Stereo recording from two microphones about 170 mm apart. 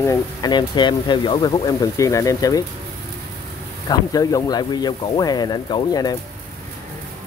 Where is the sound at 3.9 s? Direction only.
20° left (ahead or behind).